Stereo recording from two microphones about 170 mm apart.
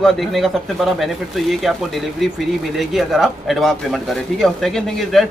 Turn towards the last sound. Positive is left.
turn(degrees=0)  # may be behind; listen again after turning